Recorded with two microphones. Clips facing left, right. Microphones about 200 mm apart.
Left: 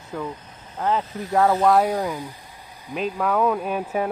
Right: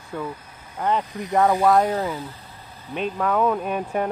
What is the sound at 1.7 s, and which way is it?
Speech, 10° left (ahead or behind).